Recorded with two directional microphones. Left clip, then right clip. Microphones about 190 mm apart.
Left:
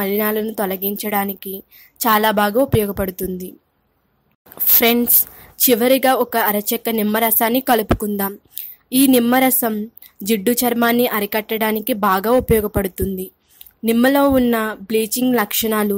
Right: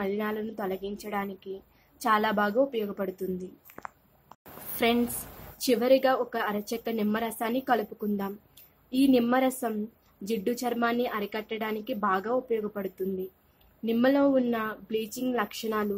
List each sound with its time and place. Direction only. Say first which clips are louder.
0.0 s speech: left 11 dB; 40° left (ahead or behind)
4.7 s speech: left 10 dB; 40° left (ahead or behind)